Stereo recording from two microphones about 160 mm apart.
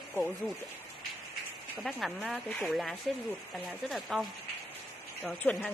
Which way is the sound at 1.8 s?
Centre (ahead or behind).